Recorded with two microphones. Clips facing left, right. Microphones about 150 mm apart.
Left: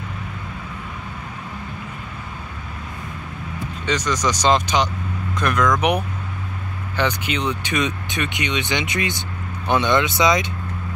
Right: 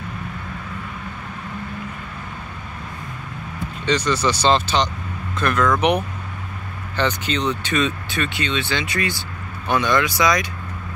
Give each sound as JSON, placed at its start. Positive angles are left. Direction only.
{"t": 3.8, "sound": "speech", "side_deg": 10}